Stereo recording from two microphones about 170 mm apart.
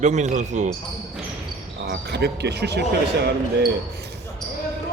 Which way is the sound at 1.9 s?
75° right (ahead or behind).